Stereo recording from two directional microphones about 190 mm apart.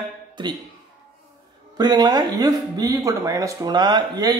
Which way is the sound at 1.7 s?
20° right (ahead or behind).